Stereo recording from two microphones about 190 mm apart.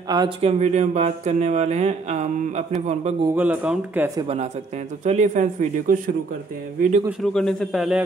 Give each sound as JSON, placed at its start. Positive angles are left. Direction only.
{"t": 0.1, "sound": "speech", "side_deg": -25}
{"t": 3.3, "sound": "speech", "side_deg": -5}
{"t": 5.0, "sound": "speech", "side_deg": -40}
{"t": 7.1, "sound": "speech", "side_deg": 0}